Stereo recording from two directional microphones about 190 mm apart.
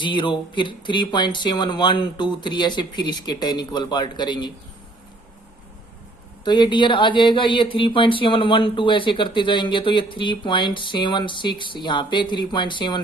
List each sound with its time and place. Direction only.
0.0 s speech: 25° left (ahead or behind)
6.4 s speech: 25° left (ahead or behind)